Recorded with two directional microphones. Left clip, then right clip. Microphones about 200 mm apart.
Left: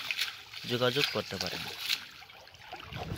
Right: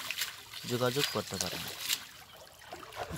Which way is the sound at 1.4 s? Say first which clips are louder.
Left 1 dB; 55° right (ahead or behind).